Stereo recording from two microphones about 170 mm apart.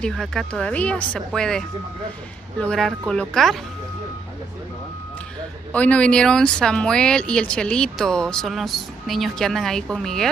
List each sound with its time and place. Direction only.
0.0 s speech: centre (ahead or behind)
5.7 s speech: 10° left (ahead or behind)